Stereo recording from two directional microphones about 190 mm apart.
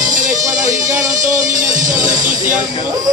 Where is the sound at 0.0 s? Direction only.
40° right (ahead or behind).